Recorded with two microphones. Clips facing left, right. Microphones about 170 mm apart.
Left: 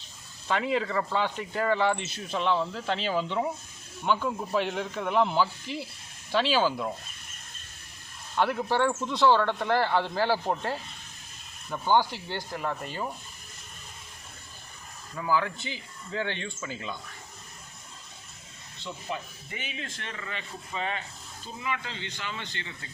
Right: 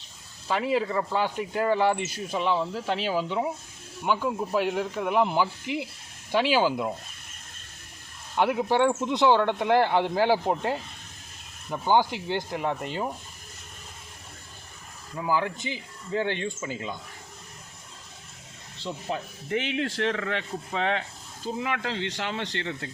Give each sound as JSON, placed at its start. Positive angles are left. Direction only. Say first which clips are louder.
{"t": 0.4, "sound": "speech", "louder": "right 2 dB", "side_deg": -5}
{"t": 8.4, "sound": "speech", "louder": "right 3 dB", "side_deg": -15}
{"t": 15.1, "sound": "speech", "louder": "right 1 dB", "side_deg": -15}
{"t": 18.8, "sound": "speech", "louder": "right 4 dB", "side_deg": -35}
{"t": 19.5, "sound": "speech", "louder": "right 14 dB", "side_deg": -65}